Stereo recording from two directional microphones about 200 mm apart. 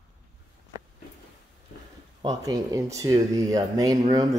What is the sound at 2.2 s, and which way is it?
Speech, 20° right (ahead or behind).